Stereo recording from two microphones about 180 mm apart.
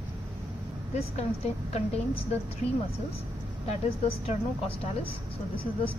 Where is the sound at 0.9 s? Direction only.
35° left (ahead or behind).